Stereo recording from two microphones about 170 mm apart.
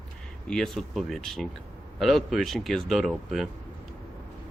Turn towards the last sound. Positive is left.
turn(degrees=0)  # may be behind; listen again after turning